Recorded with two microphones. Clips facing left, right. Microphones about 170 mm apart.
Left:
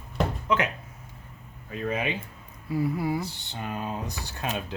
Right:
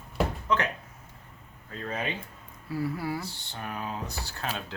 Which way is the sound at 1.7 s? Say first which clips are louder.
Left 4 dB; 15° left (ahead or behind).